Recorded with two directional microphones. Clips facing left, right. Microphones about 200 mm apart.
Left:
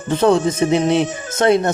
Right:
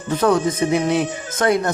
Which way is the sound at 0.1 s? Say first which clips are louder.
Left 3 dB; 25° left (ahead or behind).